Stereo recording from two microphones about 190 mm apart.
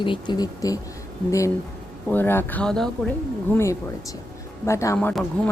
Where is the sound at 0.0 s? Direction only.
25° left (ahead or behind).